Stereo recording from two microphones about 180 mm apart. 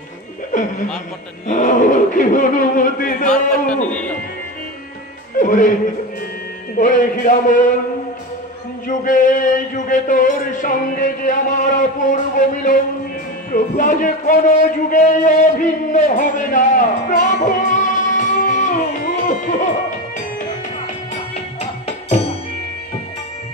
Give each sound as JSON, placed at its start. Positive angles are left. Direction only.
{"t": 0.5, "sound": "a man's voice", "side_deg": 45}
{"t": 3.9, "sound": "speech", "side_deg": 10}
{"t": 5.4, "sound": "a man's voice", "side_deg": 45}
{"t": 6.8, "sound": "a man's voice", "side_deg": 50}
{"t": 8.8, "sound": "a man's voice", "side_deg": 45}
{"t": 21.5, "sound": "music", "side_deg": 35}